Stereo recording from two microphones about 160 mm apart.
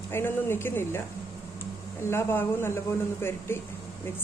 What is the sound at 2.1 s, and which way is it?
A woman's voice, 15° left (ahead or behind).